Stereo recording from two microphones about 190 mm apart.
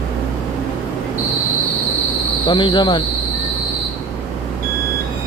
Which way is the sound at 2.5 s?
25° left (ahead or behind).